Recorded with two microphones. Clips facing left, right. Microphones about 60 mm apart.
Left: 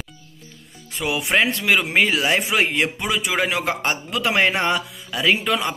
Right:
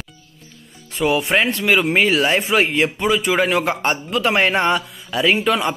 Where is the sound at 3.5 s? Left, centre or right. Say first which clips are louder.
Right 4 dB; right.